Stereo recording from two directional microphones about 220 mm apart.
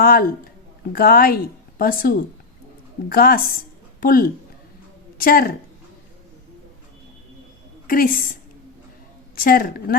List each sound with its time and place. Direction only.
0.0 s a woman's voice: 40° left (ahead or behind)
7.9 s a woman's voice: 40° left (ahead or behind)
9.3 s a woman's voice: 40° left (ahead or behind)